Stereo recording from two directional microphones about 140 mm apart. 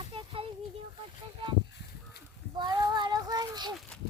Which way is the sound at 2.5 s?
30° right (ahead or behind).